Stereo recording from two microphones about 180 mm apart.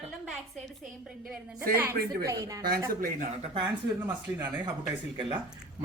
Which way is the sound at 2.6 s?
55° right (ahead or behind).